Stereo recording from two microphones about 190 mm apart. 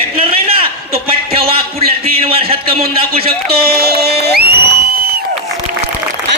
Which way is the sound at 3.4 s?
55° right (ahead or behind).